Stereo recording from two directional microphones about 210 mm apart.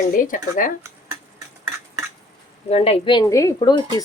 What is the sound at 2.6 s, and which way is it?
Speech, 30° left (ahead or behind).